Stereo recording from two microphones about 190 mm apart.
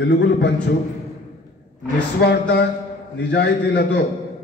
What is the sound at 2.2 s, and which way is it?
A man's voice, 60° left (ahead or behind).